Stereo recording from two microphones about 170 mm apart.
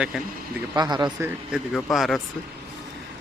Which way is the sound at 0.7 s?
25° right (ahead or behind).